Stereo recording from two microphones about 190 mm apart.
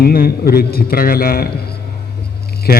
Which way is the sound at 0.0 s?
55° left (ahead or behind).